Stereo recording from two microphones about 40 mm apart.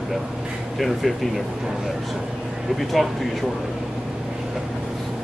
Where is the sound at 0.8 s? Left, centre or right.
Centre.